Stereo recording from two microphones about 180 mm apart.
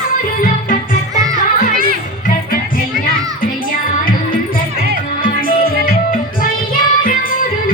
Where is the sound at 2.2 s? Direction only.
50° left (ahead or behind).